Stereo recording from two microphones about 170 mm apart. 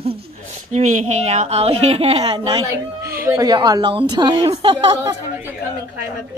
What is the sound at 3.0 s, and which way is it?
A woman's voice, 15° right (ahead or behind).